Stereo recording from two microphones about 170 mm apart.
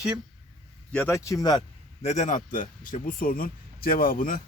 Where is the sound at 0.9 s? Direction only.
15° left (ahead or behind).